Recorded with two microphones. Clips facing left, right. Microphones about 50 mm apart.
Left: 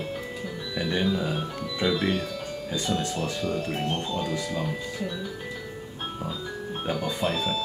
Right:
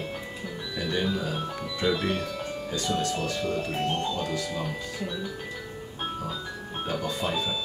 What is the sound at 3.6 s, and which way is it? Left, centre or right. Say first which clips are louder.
Speech: right 1 dB; centre.